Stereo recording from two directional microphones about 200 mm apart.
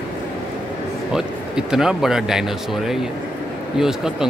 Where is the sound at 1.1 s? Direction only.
Centre (ahead or behind).